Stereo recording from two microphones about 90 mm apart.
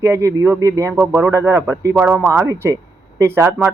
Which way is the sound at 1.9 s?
15° right (ahead or behind).